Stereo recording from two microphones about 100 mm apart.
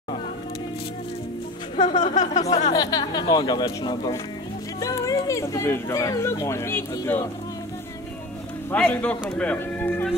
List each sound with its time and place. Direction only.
1.8 s a sound: 55° left (ahead or behind)
2.4 s speech: 35° left (ahead or behind)
4.7 s speech: 30° left (ahead or behind)
8.7 s speech: 15° left (ahead or behind)